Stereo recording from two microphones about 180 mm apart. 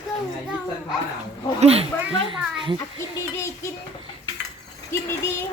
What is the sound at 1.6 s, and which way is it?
A child's voice, 35° right (ahead or behind).